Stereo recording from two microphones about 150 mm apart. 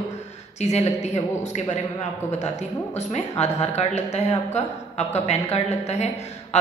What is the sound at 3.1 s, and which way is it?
A man's voice, 45° left (ahead or behind).